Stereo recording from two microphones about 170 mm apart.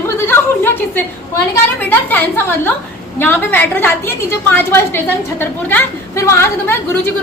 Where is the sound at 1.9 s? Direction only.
10° left (ahead or behind).